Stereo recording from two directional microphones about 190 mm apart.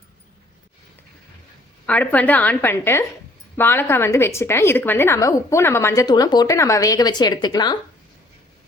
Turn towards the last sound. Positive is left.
turn(degrees=20)  # may be behind; listen again after turning